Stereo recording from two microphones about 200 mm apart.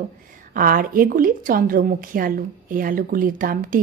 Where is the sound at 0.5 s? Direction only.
45° right (ahead or behind).